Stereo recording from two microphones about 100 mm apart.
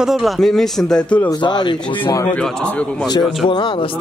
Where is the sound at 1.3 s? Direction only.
45° left (ahead or behind).